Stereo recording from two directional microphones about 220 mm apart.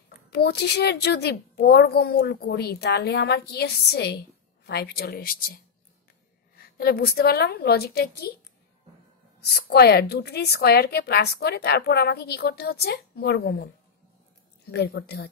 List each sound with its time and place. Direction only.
0.3 s a woman's voice: 45° left (ahead or behind)
9.5 s a woman's voice: 50° left (ahead or behind)
14.7 s a woman's voice: 50° left (ahead or behind)